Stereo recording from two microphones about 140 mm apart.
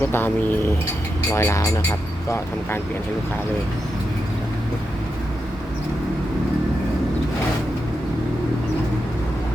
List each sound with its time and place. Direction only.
0.1 s speech: 15° left (ahead or behind)